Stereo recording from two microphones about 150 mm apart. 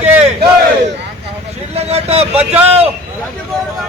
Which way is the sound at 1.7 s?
45° right (ahead or behind).